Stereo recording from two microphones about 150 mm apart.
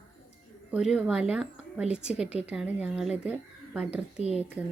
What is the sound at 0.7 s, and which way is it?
Speech, 5° right (ahead or behind).